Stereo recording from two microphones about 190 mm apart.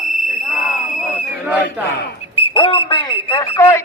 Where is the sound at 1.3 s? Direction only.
5° right (ahead or behind).